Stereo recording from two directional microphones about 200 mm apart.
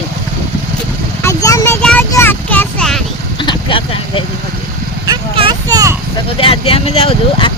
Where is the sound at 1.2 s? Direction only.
15° left (ahead or behind).